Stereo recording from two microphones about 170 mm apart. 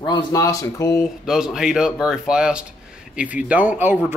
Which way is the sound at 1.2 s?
5° right (ahead or behind).